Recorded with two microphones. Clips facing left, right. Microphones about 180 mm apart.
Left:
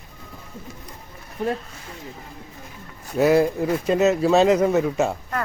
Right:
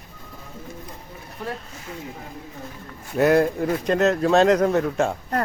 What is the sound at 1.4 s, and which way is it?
Speech, 20° left (ahead or behind).